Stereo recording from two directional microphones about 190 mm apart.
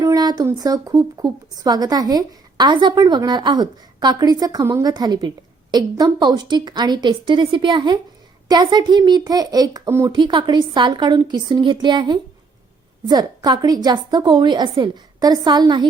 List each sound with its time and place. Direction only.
0.0 s speech: 20° right (ahead or behind)